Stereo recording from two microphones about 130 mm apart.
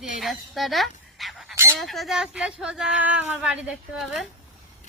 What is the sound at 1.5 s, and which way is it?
Fowl, 20° right (ahead or behind).